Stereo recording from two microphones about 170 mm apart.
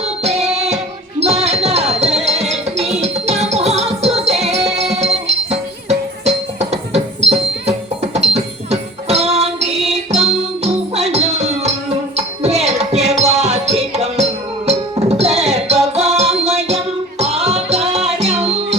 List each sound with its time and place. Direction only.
0.2 s music: 40° right (ahead or behind)
1.2 s a sound: 40° right (ahead or behind)
2.2 s music: 40° right (ahead or behind)